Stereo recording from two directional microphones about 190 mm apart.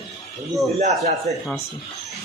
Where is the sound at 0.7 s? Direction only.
35° right (ahead or behind).